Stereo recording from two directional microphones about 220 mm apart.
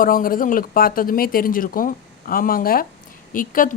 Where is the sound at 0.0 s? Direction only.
40° left (ahead or behind).